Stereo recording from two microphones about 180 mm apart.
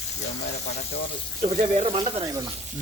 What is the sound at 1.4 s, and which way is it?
Speech, 35° right (ahead or behind).